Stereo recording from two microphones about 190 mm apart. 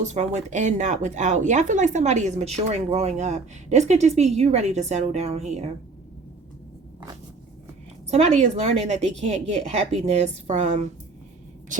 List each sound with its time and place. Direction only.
0.0 s speech: 35° right (ahead or behind)
8.1 s speech: 35° right (ahead or behind)